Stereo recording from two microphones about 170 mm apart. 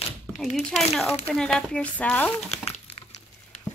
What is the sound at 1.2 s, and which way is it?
Speech, 5° left (ahead or behind).